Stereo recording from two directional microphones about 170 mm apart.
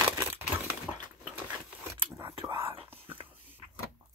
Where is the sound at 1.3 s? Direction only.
15° right (ahead or behind).